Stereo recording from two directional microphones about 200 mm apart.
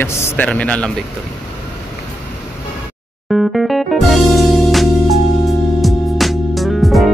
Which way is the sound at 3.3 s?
Centre (ahead or behind).